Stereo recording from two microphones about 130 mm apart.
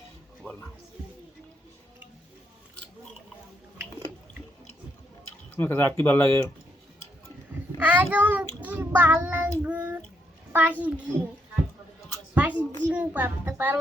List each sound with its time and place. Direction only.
0.4 s music: 10° left (ahead or behind)
5.5 s speech: 15° left (ahead or behind)
7.8 s child singing: 15° right (ahead or behind)
8.1 s a child's voice: 15° right (ahead or behind)
9.2 s child singing: 15° right (ahead or behind)
10.5 s a child's voice: 15° right (ahead or behind)
12.3 s a child's voice: 10° right (ahead or behind)